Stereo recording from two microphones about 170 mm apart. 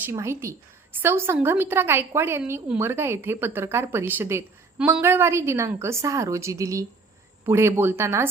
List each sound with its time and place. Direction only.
0.0 s a woman's voice: 15° right (ahead or behind)